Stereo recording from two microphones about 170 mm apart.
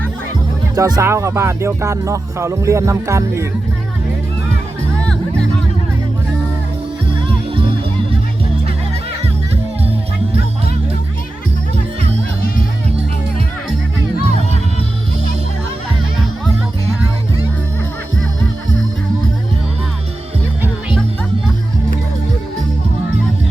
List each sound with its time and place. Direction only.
0.8 s music: 20° right (ahead or behind)
7.3 s music: 30° right (ahead or behind)